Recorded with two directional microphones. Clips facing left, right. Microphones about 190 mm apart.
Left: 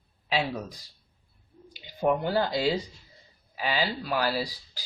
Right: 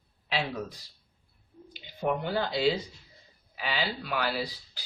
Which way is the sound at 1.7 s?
40° left (ahead or behind).